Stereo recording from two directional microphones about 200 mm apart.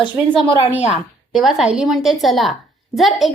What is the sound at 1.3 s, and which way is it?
A woman's voice, centre (ahead or behind).